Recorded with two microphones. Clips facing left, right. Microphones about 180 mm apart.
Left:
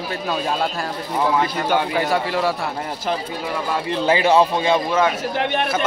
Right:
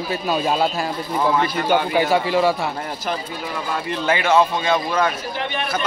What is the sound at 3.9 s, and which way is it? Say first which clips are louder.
Speech: left 2 dB; 30° left (ahead or behind).